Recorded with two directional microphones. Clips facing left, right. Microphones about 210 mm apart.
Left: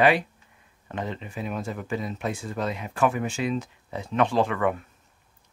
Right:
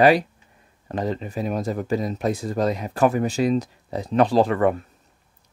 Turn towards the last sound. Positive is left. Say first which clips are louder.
# right 5 dB
turn(degrees=-35)  # may be behind; listen again after turning